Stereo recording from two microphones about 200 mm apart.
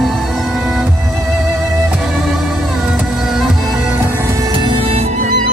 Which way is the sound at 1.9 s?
Centre (ahead or behind).